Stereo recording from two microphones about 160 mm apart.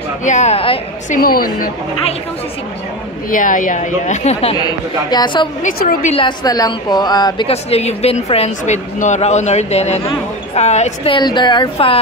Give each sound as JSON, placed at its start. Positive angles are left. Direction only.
{"t": 0.2, "sound": "a woman's voice", "side_deg": 45}
{"t": 1.1, "sound": "a woman's voice", "side_deg": 65}
{"t": 3.3, "sound": "a woman's voice", "side_deg": 55}
{"t": 4.6, "sound": "a woman's voice", "side_deg": 25}
{"t": 5.6, "sound": "a woman's voice", "side_deg": 60}
{"t": 6.1, "sound": "a woman's voice", "side_deg": 25}
{"t": 7.4, "sound": "a woman's voice", "side_deg": 40}
{"t": 11.1, "sound": "a woman's voice", "side_deg": 30}